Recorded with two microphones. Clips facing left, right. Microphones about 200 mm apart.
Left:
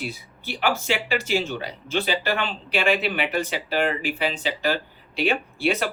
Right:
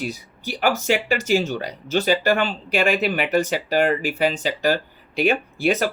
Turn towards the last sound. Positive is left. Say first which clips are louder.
# right 3 dB
turn(degrees=-45)  # may be behind; listen again after turning